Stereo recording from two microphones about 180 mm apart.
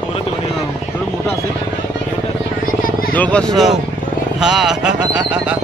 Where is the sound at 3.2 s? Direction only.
5° left (ahead or behind).